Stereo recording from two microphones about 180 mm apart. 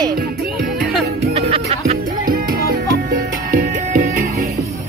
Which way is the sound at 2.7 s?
55° right (ahead or behind).